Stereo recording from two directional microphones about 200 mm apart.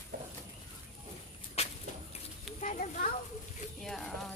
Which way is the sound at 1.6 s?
30° left (ahead or behind).